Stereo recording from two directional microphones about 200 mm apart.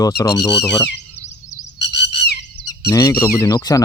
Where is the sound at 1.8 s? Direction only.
60° left (ahead or behind).